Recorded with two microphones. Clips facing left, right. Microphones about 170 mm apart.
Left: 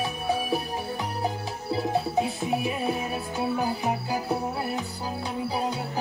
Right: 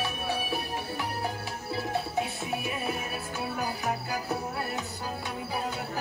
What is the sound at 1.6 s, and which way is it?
Music, 30° left (ahead or behind).